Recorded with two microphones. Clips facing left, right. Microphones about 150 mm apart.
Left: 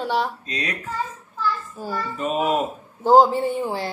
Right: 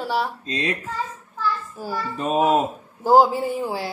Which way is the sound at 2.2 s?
35° right (ahead or behind).